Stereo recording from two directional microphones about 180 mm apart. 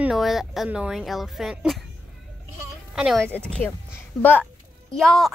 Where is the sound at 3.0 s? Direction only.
5° right (ahead or behind).